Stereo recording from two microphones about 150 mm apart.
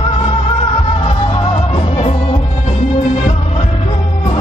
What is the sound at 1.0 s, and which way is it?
Music, 40° left (ahead or behind).